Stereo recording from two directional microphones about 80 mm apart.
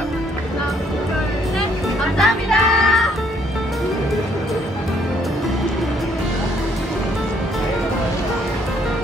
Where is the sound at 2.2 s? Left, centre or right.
Centre.